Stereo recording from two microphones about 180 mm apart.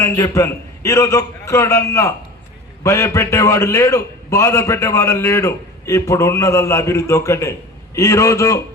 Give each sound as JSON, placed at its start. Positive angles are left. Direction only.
{"t": 0.0, "sound": "a man's voice", "side_deg": 15}